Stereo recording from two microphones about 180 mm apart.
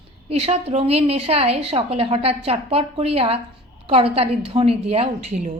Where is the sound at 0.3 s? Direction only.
35° right (ahead or behind).